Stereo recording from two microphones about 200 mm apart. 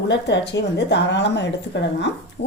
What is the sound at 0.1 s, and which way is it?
Speech, 60° left (ahead or behind).